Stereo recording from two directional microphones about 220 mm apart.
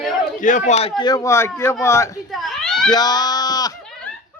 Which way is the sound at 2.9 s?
20° left (ahead or behind).